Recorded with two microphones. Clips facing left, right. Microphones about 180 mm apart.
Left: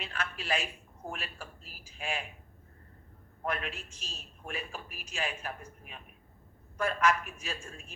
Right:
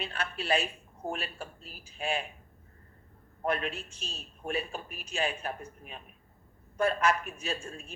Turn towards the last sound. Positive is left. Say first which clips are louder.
# right 5 dB
turn(degrees=-35)  # may be behind; listen again after turning